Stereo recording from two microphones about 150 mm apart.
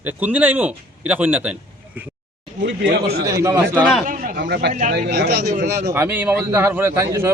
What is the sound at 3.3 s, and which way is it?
Speech, 20° right (ahead or behind).